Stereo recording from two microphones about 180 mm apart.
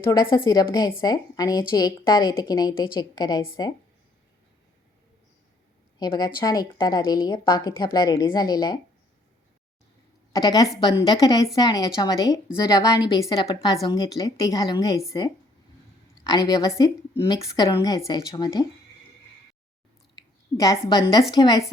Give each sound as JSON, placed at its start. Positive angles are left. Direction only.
{"t": 0.1, "sound": "a woman's voice", "side_deg": 20}
{"t": 6.0, "sound": "a woman's voice", "side_deg": 20}
{"t": 10.3, "sound": "a woman's voice", "side_deg": 20}
{"t": 20.1, "sound": "a woman's voice", "side_deg": 20}